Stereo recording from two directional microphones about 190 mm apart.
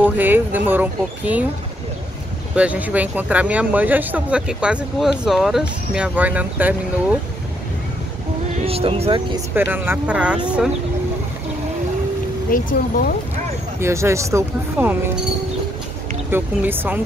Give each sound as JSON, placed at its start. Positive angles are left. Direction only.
{"t": 0.0, "sound": "speech", "side_deg": -10}
{"t": 2.5, "sound": "speech", "side_deg": -5}
{"t": 8.5, "sound": "speech", "side_deg": -30}
{"t": 9.6, "sound": "speech", "side_deg": -10}
{"t": 12.4, "sound": "speech", "side_deg": 45}
{"t": 13.7, "sound": "speech", "side_deg": -15}
{"t": 16.3, "sound": "speech", "side_deg": -10}